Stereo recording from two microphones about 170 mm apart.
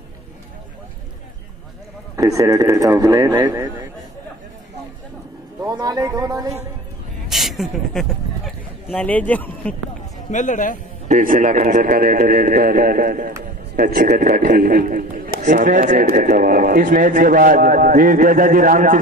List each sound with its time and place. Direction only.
2.1 s a man's voice: 20° right (ahead or behind)
5.6 s a man's voice: 20° right (ahead or behind)
7.2 s speech: centre (ahead or behind)
10.3 s a man's voice: 50° left (ahead or behind)
11.1 s a man's voice: 50° right (ahead or behind)